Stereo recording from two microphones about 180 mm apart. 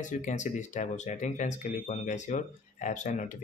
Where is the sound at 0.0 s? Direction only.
45° left (ahead or behind).